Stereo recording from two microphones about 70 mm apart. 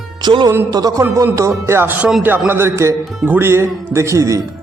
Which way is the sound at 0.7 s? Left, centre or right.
Right.